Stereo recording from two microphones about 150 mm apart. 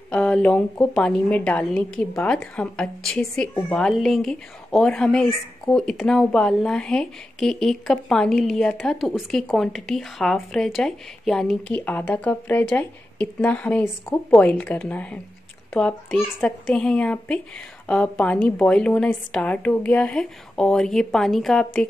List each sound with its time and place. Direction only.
0.1 s a woman's voice: 5° left (ahead or behind)